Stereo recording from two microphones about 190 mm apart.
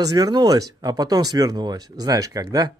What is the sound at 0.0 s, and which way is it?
Speech, 20° right (ahead or behind).